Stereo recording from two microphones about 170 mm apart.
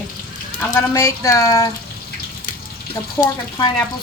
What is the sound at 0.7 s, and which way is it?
Speech, 15° left (ahead or behind).